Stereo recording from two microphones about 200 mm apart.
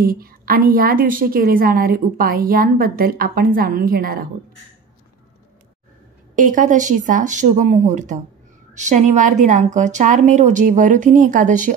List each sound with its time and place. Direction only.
0.0 s a woman's voice: 45° right (ahead or behind)
6.3 s a woman's voice: 40° right (ahead or behind)